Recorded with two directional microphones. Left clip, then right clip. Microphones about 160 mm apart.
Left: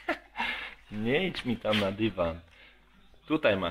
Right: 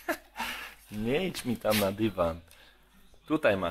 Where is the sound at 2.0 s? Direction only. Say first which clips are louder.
Right 1 dB; 20° right (ahead or behind).